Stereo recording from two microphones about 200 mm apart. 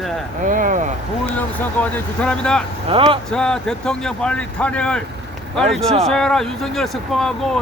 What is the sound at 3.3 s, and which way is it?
Speech, 5° left (ahead or behind).